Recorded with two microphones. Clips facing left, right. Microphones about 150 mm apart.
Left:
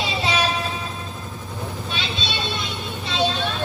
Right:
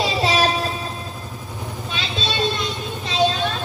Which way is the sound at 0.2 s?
40° right (ahead or behind).